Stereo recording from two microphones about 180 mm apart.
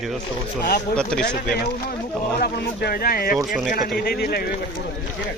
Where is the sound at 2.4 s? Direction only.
60° left (ahead or behind).